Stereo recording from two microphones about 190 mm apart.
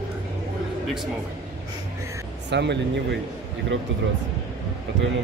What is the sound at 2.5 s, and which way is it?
Speech, 65° right (ahead or behind).